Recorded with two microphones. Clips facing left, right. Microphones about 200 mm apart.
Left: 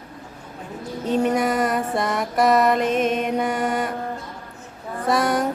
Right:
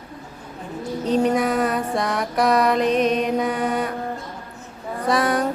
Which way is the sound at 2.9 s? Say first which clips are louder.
Right 2 dB; 50° left (ahead or behind).